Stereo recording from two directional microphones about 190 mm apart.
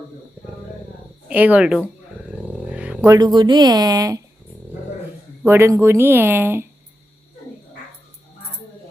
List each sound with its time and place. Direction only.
1.3 s speech: 10° right (ahead or behind)
2.7 s a sound: 5° right (ahead or behind)
3.1 s speech: 20° right (ahead or behind)
5.4 s speech: 15° right (ahead or behind)